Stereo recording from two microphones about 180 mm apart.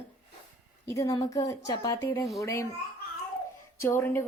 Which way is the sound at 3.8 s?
15° left (ahead or behind).